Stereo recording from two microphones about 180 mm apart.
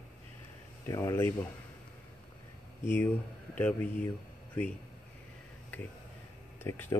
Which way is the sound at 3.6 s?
10° left (ahead or behind).